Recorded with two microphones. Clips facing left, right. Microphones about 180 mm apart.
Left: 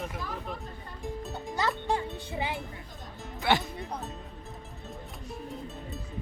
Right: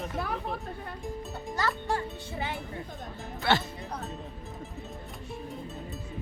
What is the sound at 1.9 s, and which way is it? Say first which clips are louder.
Speech: left 1 dB; 15° left (ahead or behind).